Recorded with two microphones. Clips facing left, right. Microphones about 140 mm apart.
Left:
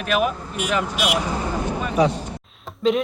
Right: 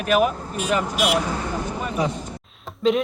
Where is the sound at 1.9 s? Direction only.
75° left (ahead or behind).